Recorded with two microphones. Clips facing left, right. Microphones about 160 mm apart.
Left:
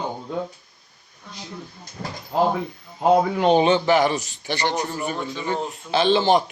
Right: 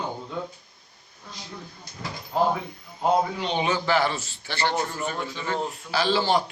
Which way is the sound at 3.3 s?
50° left (ahead or behind).